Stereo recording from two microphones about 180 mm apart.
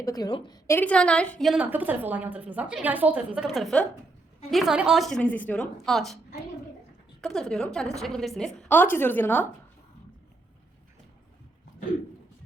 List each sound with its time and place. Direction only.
0.0 s a woman's voice: 20° left (ahead or behind)
0.8 s a woman's voice: 10° left (ahead or behind)
7.2 s a woman's voice: centre (ahead or behind)